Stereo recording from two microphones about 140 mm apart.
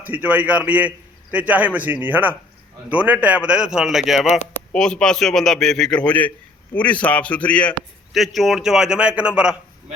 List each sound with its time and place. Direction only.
0.0 s a man's voice: 10° right (ahead or behind)
4.3 s speech: 55° left (ahead or behind)
4.7 s a man's voice: 5° left (ahead or behind)